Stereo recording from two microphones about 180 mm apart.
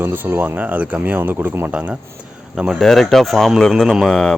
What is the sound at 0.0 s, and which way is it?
Speech, 10° right (ahead or behind).